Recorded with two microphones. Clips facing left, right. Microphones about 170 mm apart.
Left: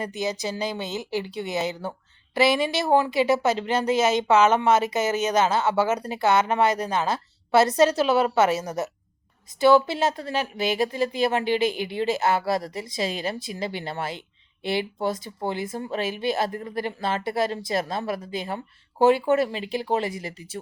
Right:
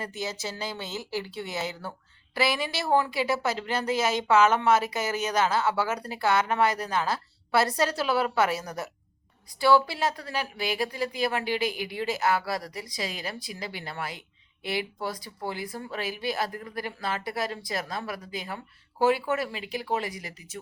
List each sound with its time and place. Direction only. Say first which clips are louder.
0.0 s speech: left 6 dB; 20° left (ahead or behind)